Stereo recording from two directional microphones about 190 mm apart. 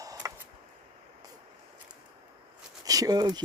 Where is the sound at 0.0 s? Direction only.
15° right (ahead or behind).